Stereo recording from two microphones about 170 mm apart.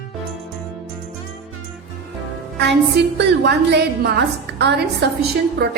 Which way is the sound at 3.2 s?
85° right.